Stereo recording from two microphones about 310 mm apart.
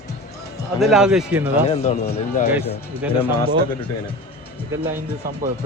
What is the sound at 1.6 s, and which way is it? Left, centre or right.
Speech, centre.